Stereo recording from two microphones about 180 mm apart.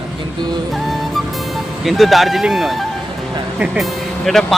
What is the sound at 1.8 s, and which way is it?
Speech, centre (ahead or behind).